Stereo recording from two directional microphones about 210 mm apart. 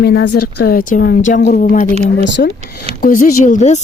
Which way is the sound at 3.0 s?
40° left (ahead or behind).